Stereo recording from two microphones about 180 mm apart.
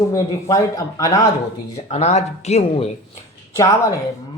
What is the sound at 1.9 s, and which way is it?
Speech, 35° left (ahead or behind).